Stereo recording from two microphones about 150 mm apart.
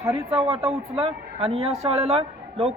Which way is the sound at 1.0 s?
40° right (ahead or behind).